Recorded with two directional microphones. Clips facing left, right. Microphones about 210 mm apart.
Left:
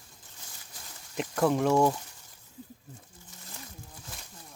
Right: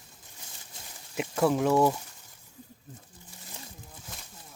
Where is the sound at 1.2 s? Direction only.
5° right (ahead or behind).